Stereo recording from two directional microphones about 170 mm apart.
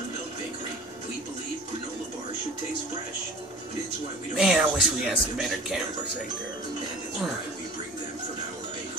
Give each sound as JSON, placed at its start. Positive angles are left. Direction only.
{"t": 4.4, "sound": "speech", "side_deg": 0}